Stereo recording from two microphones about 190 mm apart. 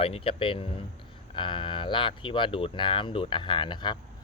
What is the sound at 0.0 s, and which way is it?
Speech, 30° left (ahead or behind).